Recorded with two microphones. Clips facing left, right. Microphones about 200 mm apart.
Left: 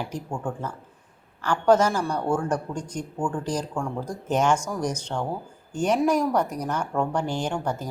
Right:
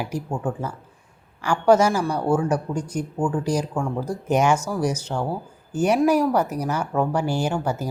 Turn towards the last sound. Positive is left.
turn(degrees=-5)  # may be behind; listen again after turning